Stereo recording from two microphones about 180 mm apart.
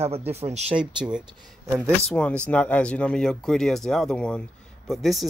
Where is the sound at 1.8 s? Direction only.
5° left (ahead or behind).